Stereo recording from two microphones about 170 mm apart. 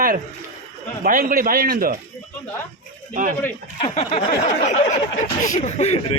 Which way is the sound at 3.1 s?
50° right (ahead or behind).